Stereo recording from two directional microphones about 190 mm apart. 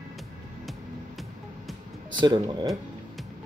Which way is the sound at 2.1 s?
25° right (ahead or behind).